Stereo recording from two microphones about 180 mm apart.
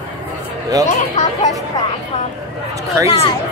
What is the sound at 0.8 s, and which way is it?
Speech, 45° left (ahead or behind).